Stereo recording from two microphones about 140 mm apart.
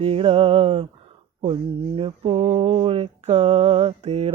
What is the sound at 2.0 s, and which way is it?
Mantra, 40° right (ahead or behind).